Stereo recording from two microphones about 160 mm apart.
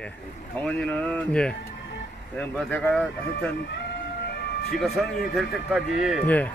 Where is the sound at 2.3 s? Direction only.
10° left (ahead or behind).